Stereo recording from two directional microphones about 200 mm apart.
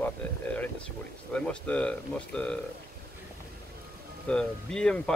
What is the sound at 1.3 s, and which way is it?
Speech, 5° left (ahead or behind).